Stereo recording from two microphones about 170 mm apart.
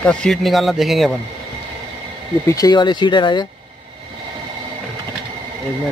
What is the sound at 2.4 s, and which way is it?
Speech, 20° left (ahead or behind).